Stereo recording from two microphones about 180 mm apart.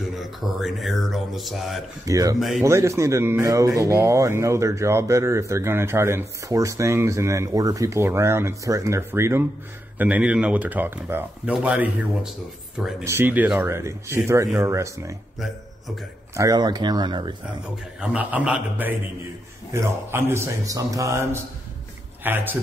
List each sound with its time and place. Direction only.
0.0 s speech: centre (ahead or behind)
2.0 s speech: 20° right (ahead or behind)
16.3 s speech: 20° right (ahead or behind)
18.0 s speech: 5° right (ahead or behind)